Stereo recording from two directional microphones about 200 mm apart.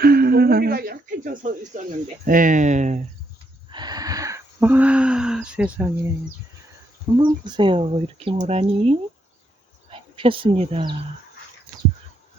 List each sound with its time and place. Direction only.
0.0 s speech: 50° right (ahead or behind)
3.7 s a sound: 20° right (ahead or behind)
7.2 s speech: 25° right (ahead or behind)